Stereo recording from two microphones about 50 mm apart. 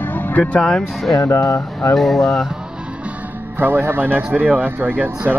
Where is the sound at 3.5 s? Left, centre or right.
Right.